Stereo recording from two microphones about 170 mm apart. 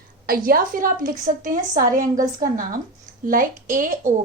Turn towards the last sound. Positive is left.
turn(degrees=-50)  # may be behind; listen again after turning